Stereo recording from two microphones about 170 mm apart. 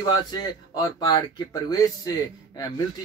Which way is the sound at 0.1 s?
25° left (ahead or behind).